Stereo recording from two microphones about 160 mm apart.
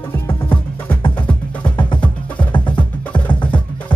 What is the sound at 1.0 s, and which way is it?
Music, 30° left (ahead or behind).